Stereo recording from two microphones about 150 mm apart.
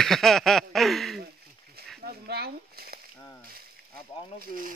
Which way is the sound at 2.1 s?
90° right.